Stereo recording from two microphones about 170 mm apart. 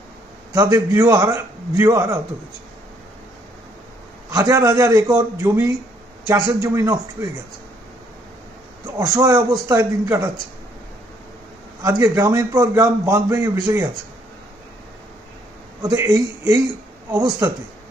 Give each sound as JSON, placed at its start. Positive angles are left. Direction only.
{"t": 0.5, "sound": "a man's voice", "side_deg": -20}
{"t": 4.3, "sound": "a man's voice", "side_deg": -20}
{"t": 8.9, "sound": "a man's voice", "side_deg": -15}
{"t": 11.8, "sound": "a man's voice", "side_deg": -15}
{"t": 15.8, "sound": "a man's voice", "side_deg": -20}